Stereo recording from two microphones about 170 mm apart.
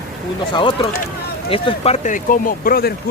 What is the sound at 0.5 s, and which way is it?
Speech, 30° left (ahead or behind).